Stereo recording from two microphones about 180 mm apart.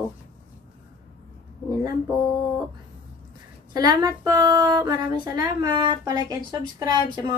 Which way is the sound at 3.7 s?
20° right (ahead or behind).